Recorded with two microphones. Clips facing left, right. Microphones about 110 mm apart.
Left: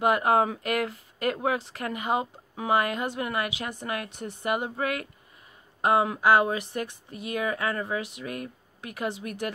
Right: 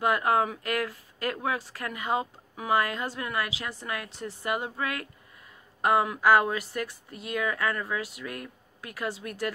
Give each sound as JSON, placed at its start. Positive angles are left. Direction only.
{"t": 0.0, "sound": "speech", "side_deg": 20}